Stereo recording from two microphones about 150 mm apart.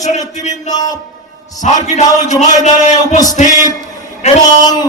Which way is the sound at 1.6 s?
50° left (ahead or behind).